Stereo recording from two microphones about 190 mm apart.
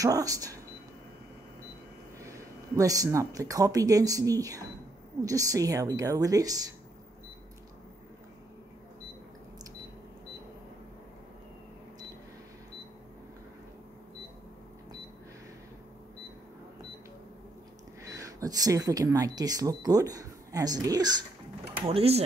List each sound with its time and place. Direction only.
0.0 s a woman's voice: 20° right (ahead or behind)
2.1 s a woman's voice: 15° right (ahead or behind)
18.0 s speech: 20° right (ahead or behind)